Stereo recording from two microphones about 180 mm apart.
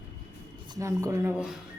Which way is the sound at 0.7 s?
15° right (ahead or behind).